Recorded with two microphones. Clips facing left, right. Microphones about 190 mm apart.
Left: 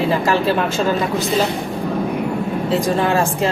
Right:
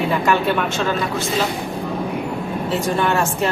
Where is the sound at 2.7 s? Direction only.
30° left (ahead or behind).